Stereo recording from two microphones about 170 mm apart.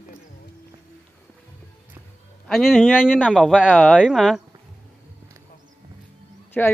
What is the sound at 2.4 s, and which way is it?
A man's voice, centre (ahead or behind).